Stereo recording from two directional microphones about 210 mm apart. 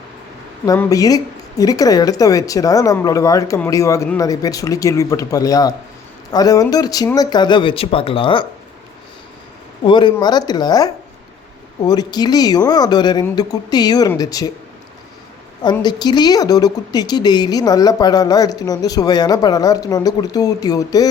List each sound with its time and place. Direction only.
0.6 s speech: 15° left (ahead or behind)
9.8 s speech: 20° left (ahead or behind)
15.6 s speech: 20° left (ahead or behind)